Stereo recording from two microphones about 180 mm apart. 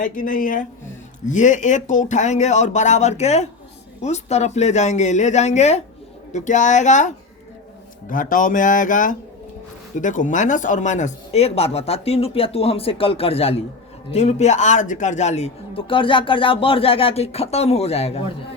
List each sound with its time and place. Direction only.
0.0 s a man's voice: 50° left (ahead or behind)
8.1 s a man's voice: 45° left (ahead or behind)